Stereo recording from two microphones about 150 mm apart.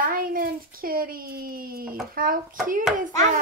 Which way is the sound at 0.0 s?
70° right (ahead or behind).